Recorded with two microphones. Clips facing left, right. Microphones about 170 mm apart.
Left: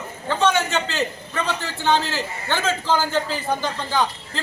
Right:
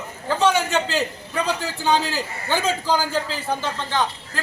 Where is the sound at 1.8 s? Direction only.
10° right (ahead or behind).